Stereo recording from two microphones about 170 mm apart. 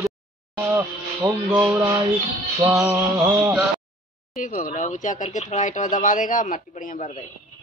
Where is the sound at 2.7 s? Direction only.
5° right (ahead or behind).